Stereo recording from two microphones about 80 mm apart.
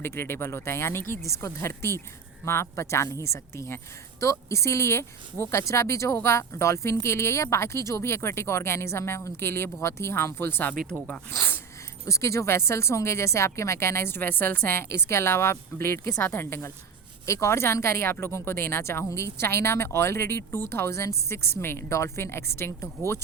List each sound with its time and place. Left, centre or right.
0.0 s speech: left
10.8 s speech: centre
11.3 s speech: left
12.0 s speech: left